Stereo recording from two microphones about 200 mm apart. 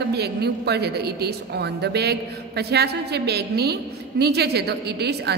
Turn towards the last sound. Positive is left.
turn(degrees=-55)  # may be behind; listen again after turning